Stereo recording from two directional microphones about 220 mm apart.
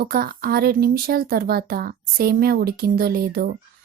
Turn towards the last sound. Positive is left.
turn(degrees=-45)  # may be behind; listen again after turning